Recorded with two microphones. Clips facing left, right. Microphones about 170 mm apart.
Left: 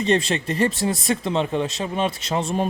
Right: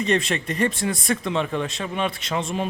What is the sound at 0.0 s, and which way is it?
Speech, 30° left (ahead or behind).